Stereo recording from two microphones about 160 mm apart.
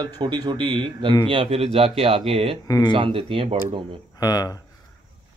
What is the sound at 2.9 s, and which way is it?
Speech, 35° right (ahead or behind).